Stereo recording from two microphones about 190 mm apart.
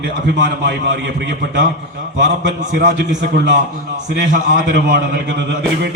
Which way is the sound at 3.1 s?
70° right (ahead or behind).